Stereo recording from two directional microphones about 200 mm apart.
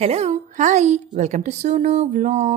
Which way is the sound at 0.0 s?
30° right (ahead or behind).